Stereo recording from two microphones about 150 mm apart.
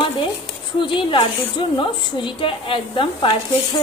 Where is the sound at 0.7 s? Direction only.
35° left (ahead or behind).